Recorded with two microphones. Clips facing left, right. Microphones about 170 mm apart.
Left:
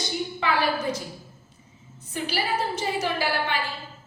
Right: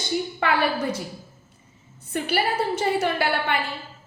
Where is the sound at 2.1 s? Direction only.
55° right (ahead or behind).